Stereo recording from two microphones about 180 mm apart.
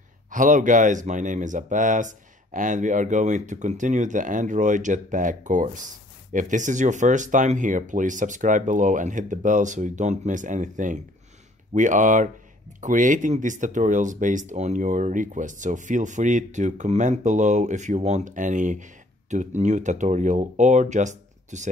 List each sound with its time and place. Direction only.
0.3 s speech: 45° right (ahead or behind)